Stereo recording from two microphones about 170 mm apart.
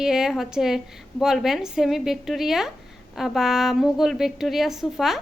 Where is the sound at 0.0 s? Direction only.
5° right (ahead or behind).